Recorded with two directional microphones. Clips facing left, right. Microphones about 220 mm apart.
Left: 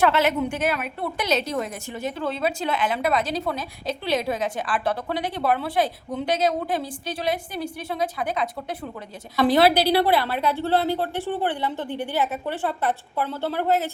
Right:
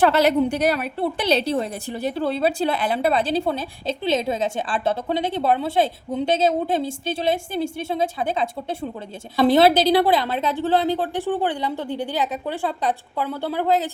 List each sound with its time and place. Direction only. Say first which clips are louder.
0.0 s a woman's voice: right 4 dB; 35° right (ahead or behind); by 13.9 s 15° right (ahead or behind)